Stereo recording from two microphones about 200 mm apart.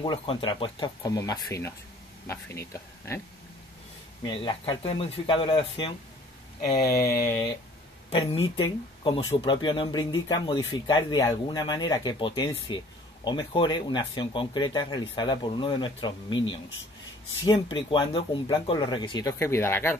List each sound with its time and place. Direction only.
0.0 s speech: 25° left (ahead or behind)
4.2 s speech: 25° left (ahead or behind)
7.0 s speech: 50° left (ahead or behind)
8.1 s speech: 30° left (ahead or behind); by 20.0 s 10° left (ahead or behind)